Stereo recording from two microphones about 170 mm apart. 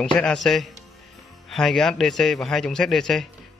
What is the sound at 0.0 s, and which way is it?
A man's voice, 5° left (ahead or behind).